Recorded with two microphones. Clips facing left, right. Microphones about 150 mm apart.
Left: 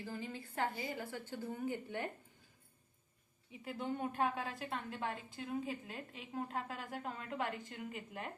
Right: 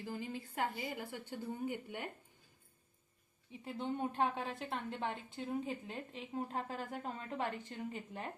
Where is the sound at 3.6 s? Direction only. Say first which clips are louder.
Right 1 dB; 25° right (ahead or behind).